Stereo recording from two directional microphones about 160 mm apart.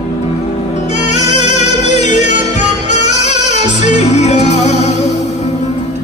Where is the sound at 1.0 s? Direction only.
45° left (ahead or behind).